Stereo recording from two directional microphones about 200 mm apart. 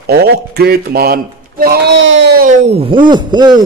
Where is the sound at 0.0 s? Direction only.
50° right (ahead or behind).